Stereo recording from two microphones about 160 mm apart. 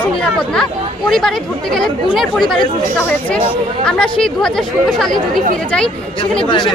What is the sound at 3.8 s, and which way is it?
Speech, 5° left (ahead or behind).